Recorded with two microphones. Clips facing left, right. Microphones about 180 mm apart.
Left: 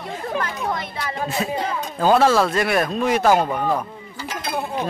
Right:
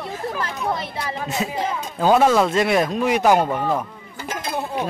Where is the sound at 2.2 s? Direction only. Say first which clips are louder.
Right 1 dB; 20° right (ahead or behind).